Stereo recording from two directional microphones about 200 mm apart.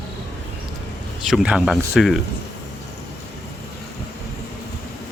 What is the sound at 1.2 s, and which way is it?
Speech, 5° right (ahead or behind).